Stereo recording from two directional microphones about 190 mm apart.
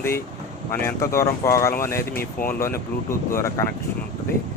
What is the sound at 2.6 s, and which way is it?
Speech, 15° left (ahead or behind).